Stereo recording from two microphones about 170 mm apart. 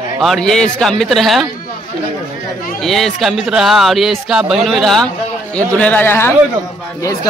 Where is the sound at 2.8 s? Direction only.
Centre (ahead or behind).